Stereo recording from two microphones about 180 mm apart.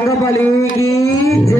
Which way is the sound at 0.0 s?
15° left (ahead or behind).